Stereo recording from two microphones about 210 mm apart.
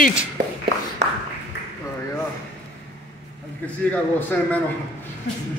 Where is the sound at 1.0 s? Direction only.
55° right (ahead or behind).